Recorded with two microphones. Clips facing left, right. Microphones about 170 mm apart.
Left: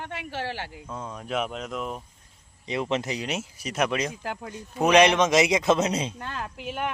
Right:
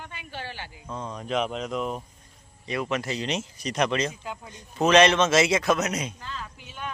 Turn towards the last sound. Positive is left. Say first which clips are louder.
# left 7 dB
turn(degrees=65)  # may be behind; listen again after turning